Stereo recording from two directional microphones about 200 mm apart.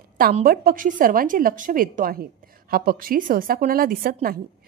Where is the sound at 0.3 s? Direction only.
45° right (ahead or behind).